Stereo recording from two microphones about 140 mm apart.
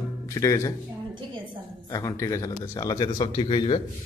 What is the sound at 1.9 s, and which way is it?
A man's voice, 25° left (ahead or behind).